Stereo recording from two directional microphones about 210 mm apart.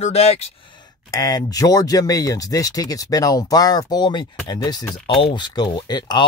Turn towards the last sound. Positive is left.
turn(degrees=20)  # may be behind; listen again after turning